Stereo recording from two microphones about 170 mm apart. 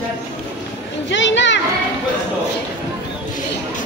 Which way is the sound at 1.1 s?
90° left.